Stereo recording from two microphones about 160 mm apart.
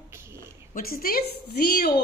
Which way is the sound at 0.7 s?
65° left (ahead or behind).